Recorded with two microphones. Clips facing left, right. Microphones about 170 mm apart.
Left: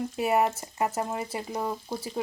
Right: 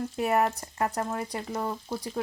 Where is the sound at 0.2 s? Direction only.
5° left (ahead or behind).